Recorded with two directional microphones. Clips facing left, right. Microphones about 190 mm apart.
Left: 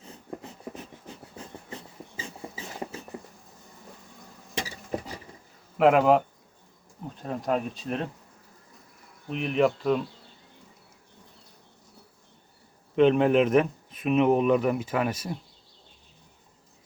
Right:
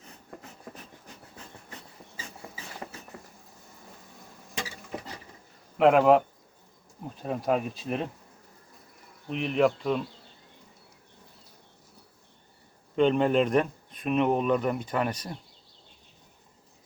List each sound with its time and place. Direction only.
0.3 s writing: 25° left (ahead or behind)
2.8 s a sound: 20° left (ahead or behind)
5.7 s speech: centre (ahead or behind)
9.3 s speech: centre (ahead or behind)
13.0 s speech: 5° left (ahead or behind)